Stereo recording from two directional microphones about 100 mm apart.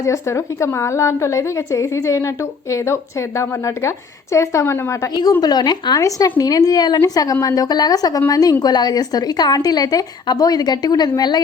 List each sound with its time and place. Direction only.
0.0 s a woman's voice: 30° left (ahead or behind)
5.4 s a woman's voice: 40° left (ahead or behind)